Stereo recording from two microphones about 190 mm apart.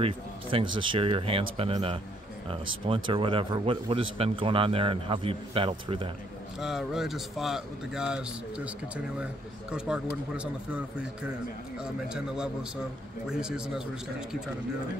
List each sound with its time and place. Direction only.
0.0 s speech: 30° right (ahead or behind)
6.6 s speech: centre (ahead or behind)